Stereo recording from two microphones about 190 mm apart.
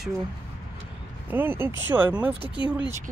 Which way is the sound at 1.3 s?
10° right (ahead or behind).